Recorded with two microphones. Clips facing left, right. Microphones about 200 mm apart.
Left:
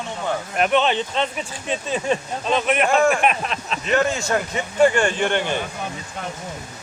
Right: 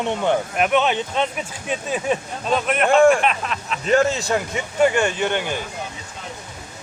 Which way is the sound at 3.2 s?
20° left (ahead or behind).